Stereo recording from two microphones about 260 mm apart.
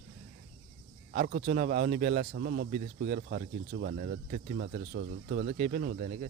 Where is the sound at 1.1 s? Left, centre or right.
Right.